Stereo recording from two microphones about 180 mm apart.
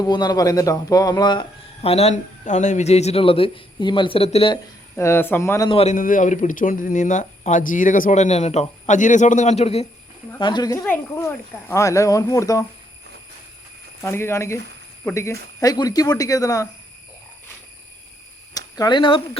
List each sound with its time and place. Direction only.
0.0 s speech: 20° left (ahead or behind)
4.5 s speech: 15° left (ahead or behind)
5.7 s speech: 40° left (ahead or behind)
10.3 s speech: 25° left (ahead or behind)
10.8 s speech: 10° left (ahead or behind)
14.0 s speech: 15° left (ahead or behind)
18.5 s speech: 25° left (ahead or behind)